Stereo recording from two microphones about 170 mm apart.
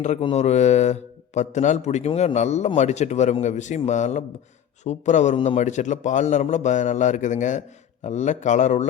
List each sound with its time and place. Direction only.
0.0 s speech: 40° left (ahead or behind)